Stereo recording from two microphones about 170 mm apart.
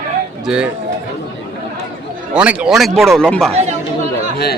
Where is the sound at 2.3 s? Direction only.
5° right (ahead or behind).